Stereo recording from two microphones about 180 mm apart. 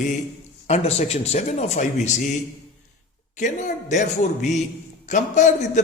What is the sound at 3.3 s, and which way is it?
A man's voice, 40° left (ahead or behind).